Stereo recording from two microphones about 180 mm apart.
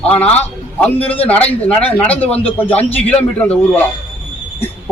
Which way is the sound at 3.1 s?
10° left (ahead or behind).